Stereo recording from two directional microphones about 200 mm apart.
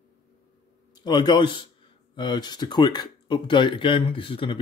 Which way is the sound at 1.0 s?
20° left (ahead or behind).